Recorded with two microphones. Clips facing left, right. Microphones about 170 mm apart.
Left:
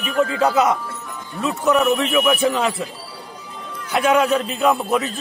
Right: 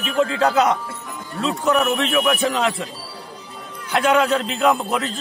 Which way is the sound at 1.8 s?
5° left (ahead or behind).